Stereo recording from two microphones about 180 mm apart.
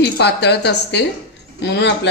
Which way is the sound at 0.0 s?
65° left (ahead or behind).